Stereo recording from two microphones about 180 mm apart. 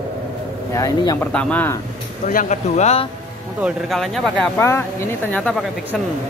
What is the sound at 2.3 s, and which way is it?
Speech, 45° left (ahead or behind).